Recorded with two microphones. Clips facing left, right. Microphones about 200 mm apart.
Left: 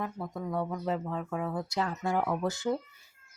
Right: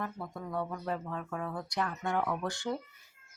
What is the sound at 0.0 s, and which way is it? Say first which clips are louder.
Speech: left 3 dB; 20° left (ahead or behind).